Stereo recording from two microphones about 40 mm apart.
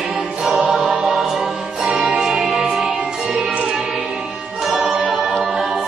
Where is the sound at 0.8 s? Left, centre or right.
Centre.